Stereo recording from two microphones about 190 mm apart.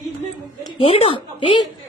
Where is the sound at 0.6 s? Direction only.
30° left (ahead or behind).